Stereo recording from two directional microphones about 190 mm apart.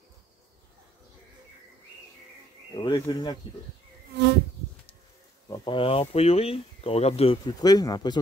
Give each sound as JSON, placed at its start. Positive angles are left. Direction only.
{"t": 2.7, "sound": "speech", "side_deg": 25}
{"t": 4.1, "sound": "insect", "side_deg": -60}
{"t": 5.5, "sound": "speech", "side_deg": 25}